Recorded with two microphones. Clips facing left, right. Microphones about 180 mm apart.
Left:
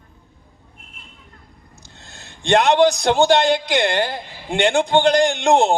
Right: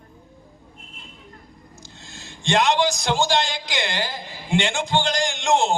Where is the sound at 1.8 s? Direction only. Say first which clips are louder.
Even; 60° left (ahead or behind).